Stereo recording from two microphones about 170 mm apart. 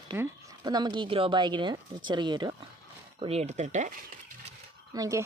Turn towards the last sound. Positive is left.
turn(degrees=-20)  # may be behind; listen again after turning